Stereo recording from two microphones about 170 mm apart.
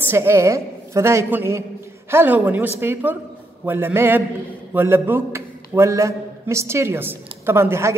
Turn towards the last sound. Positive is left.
turn(degrees=-15)  # may be behind; listen again after turning